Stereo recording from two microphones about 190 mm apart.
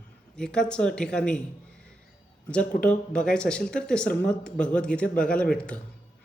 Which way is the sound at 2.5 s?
5° left (ahead or behind).